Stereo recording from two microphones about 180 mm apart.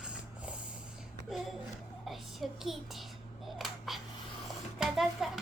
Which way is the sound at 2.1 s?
Centre (ahead or behind).